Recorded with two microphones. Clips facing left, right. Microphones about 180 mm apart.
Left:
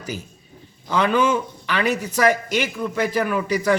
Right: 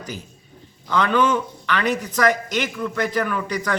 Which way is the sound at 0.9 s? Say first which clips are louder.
Even; 10° left (ahead or behind).